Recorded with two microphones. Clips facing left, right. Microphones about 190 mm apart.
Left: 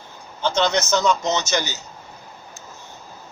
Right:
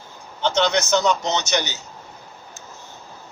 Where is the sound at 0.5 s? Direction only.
15° right (ahead or behind).